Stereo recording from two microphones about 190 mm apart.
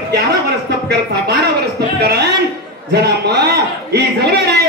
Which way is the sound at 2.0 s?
60° right (ahead or behind).